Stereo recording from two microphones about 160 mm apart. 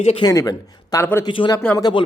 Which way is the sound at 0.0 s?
35° left (ahead or behind).